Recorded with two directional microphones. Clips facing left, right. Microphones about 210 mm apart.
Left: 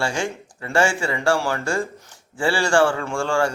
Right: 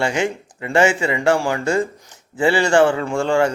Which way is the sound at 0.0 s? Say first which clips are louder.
Right 4 dB; 20° right (ahead or behind).